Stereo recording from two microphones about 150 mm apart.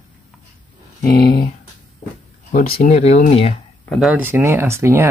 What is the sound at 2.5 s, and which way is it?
Speech, 80° left.